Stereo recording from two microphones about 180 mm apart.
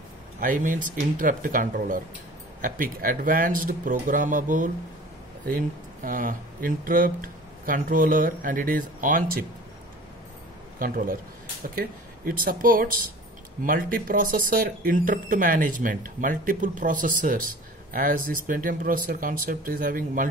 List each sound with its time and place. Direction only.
0.4 s speech: 50° right (ahead or behind)
6.0 s speech: 50° right (ahead or behind)
10.8 s speech: 50° right (ahead or behind)
12.3 s speech: 50° right (ahead or behind)